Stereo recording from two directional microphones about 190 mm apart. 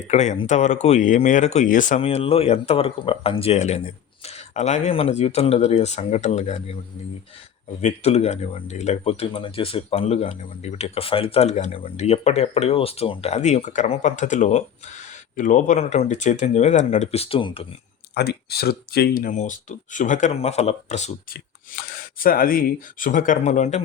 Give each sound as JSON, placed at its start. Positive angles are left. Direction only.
{"t": 0.1, "sound": "speech", "side_deg": 35}
{"t": 2.0, "sound": "speech", "side_deg": 30}
{"t": 7.8, "sound": "speech", "side_deg": 35}
{"t": 18.1, "sound": "speech", "side_deg": 55}
{"t": 21.3, "sound": "speech", "side_deg": 50}